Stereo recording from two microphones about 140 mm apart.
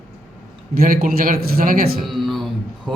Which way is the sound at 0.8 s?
90° right.